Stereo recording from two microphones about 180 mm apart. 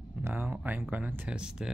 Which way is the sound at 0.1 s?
10° right (ahead or behind).